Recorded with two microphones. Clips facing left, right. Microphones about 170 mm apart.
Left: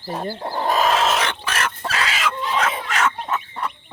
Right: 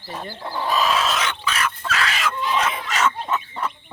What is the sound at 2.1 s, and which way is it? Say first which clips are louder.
Chicken: left 1 dB; centre (ahead or behind).